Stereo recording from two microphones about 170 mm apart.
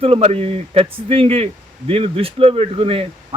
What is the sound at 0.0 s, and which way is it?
Speech, 35° right (ahead or behind).